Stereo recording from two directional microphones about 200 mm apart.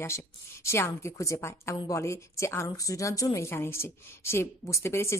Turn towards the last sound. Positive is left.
turn(degrees=15)  # may be behind; listen again after turning